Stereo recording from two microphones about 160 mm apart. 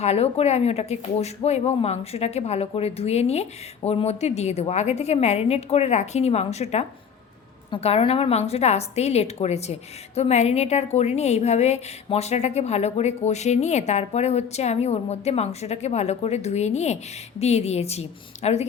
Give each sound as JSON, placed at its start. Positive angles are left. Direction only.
{"t": 0.0, "sound": "a woman's voice", "side_deg": 40}